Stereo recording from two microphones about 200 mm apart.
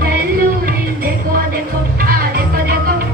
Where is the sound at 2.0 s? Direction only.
45° right (ahead or behind).